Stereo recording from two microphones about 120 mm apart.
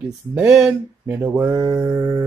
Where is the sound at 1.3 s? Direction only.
20° right (ahead or behind).